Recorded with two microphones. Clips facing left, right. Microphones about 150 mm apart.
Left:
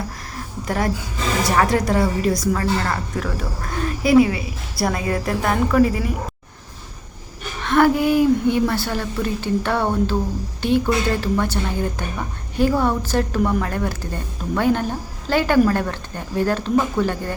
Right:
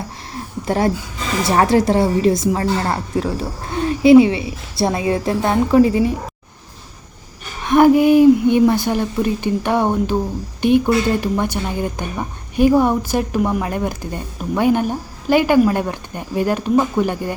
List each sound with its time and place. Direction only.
0.3 s a sound: 30° right (ahead or behind)
1.5 s a woman's voice: 30° right (ahead or behind)
7.6 s a woman's voice: 15° right (ahead or behind)